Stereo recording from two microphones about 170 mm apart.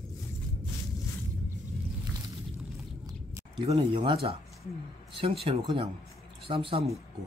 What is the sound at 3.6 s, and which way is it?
Speech, 35° right (ahead or behind).